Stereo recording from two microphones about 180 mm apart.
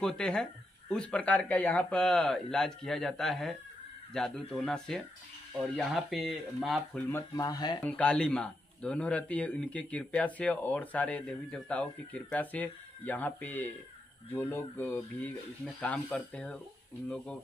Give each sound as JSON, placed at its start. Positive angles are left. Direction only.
{"t": 0.0, "sound": "speech", "side_deg": 5}
{"t": 7.2, "sound": "speech", "side_deg": 20}
{"t": 7.8, "sound": "a man's voice", "side_deg": 5}